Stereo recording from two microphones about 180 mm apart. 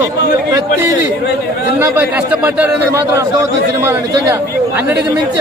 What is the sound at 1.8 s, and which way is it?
A man's voice, 10° right (ahead or behind).